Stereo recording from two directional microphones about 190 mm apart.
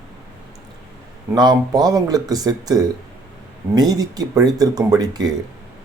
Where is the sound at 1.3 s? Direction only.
20° right (ahead or behind).